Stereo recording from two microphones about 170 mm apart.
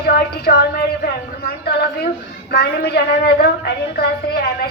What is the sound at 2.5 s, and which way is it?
A woman's voice, 70° left (ahead or behind).